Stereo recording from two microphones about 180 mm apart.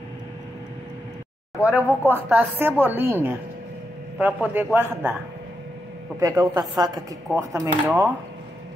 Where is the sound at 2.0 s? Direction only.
10° right (ahead or behind).